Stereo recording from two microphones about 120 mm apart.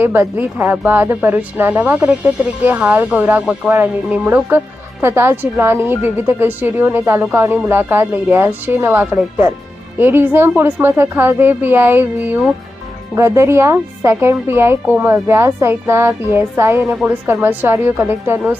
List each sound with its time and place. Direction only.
0.0 s speech: 15° right (ahead or behind)